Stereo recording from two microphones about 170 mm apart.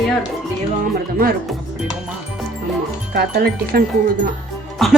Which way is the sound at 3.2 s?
65° right (ahead or behind).